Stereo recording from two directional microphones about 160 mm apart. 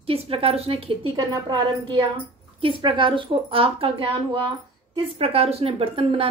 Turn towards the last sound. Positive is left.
turn(degrees=-35)  # may be behind; listen again after turning